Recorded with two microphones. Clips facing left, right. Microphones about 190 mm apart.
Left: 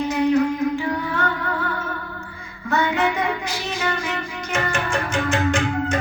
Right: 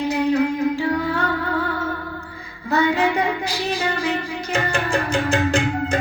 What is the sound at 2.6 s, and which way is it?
Music, 35° right (ahead or behind).